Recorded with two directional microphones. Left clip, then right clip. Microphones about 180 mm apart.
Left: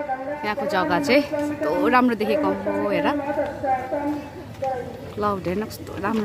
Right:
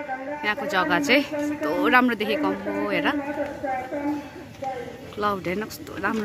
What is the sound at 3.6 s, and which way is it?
Speech, 45° left (ahead or behind).